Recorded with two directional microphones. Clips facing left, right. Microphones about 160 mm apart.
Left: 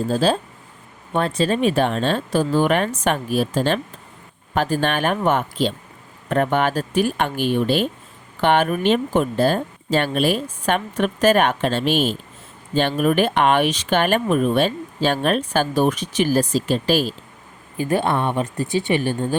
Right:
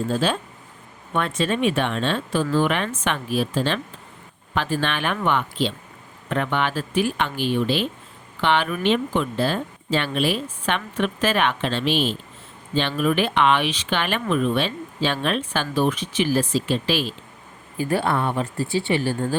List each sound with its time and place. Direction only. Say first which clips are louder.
0.1 s speech: left 4 dB; 35° left (ahead or behind)
17.7 s speech: left 2 dB; 20° left (ahead or behind)